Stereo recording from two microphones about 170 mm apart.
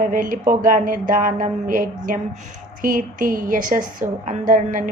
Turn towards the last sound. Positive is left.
turn(degrees=-55)  # may be behind; listen again after turning